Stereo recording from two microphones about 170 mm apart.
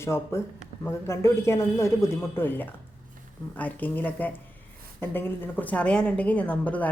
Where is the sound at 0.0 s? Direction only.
15° left (ahead or behind).